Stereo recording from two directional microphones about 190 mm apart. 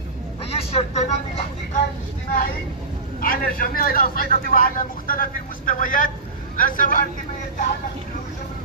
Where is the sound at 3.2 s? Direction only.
50° left (ahead or behind).